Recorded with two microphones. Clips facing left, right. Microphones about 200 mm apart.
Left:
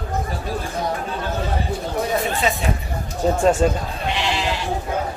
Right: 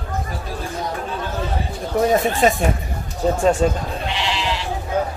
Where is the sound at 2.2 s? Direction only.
50° right (ahead or behind).